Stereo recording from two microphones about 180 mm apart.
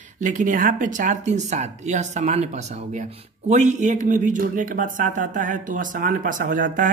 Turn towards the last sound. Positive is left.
turn(degrees=-45)  # may be behind; listen again after turning